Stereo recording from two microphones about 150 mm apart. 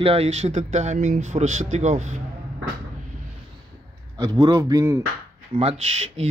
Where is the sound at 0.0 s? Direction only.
40° right (ahead or behind).